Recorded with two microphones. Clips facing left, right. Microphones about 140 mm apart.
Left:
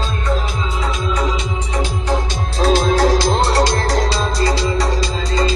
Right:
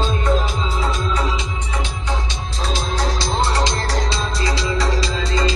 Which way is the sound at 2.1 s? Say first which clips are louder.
Left 6 dB; 50° left (ahead or behind).